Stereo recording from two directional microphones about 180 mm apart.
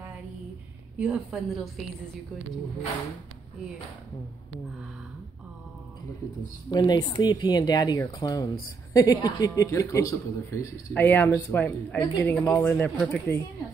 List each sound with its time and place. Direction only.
0.9 s a woman's voice: 5° right (ahead or behind)
6.7 s speech: 25° left (ahead or behind)